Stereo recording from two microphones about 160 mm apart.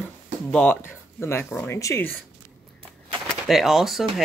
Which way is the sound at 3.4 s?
Centre (ahead or behind).